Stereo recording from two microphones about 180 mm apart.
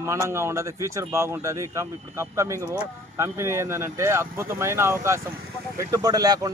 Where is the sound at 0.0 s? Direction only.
15° right (ahead or behind).